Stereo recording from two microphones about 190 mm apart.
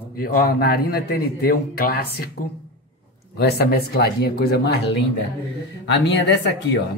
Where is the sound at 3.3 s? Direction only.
55° left (ahead or behind).